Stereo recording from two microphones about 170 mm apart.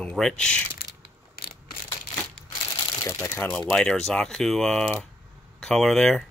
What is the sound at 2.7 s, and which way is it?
Shuffling cards, 20° left (ahead or behind).